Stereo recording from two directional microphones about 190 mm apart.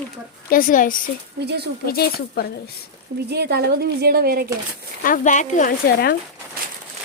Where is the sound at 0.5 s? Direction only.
45° left (ahead or behind).